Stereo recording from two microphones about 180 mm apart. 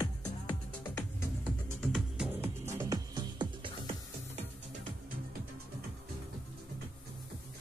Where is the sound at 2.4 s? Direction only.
15° right (ahead or behind).